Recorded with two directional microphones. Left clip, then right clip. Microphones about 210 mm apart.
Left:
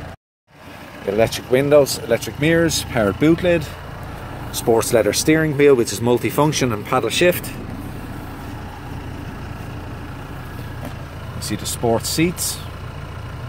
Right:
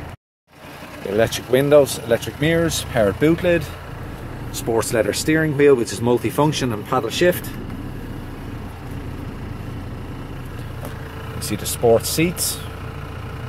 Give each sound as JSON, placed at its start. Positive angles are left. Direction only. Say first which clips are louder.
{"t": 1.1, "sound": "speech", "louder": "even", "side_deg": 5}
{"t": 4.6, "sound": "speech", "louder": "left 4 dB", "side_deg": 20}
{"t": 11.4, "sound": "speech", "louder": "right 4 dB", "side_deg": -5}